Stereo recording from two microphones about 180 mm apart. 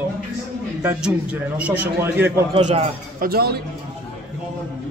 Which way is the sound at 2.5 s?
35° right (ahead or behind).